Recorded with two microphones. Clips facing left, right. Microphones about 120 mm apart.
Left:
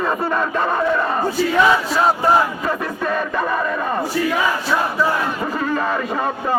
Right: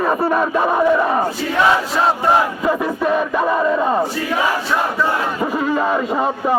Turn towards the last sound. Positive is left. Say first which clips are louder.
# right 3 dB
turn(degrees=-15)  # may be behind; listen again after turning